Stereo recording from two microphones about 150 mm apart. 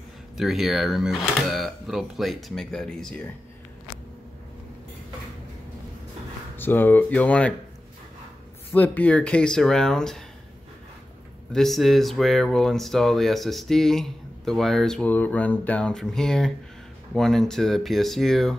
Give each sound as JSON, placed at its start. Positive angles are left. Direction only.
{"t": 0.4, "sound": "speech", "side_deg": 0}
{"t": 6.5, "sound": "speech", "side_deg": 15}
{"t": 8.7, "sound": "speech", "side_deg": 10}
{"t": 11.5, "sound": "speech", "side_deg": 0}